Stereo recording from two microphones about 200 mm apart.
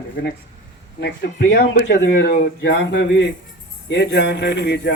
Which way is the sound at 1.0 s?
60° left (ahead or behind).